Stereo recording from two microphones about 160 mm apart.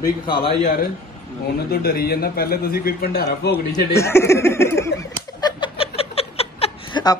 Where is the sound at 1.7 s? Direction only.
70° left (ahead or behind); by 3.5 s 90° left.